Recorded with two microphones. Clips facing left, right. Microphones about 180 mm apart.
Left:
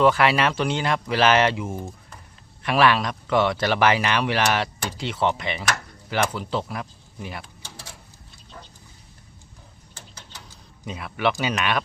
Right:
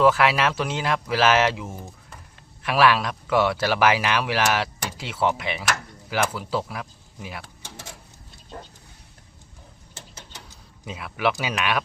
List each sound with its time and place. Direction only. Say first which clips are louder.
0.0 s a man's voice: even; centre (ahead or behind)
9.9 s mechanisms: right 1 dB; 25° right (ahead or behind)
10.8 s a man's voice: left 1 dB; 5° right (ahead or behind)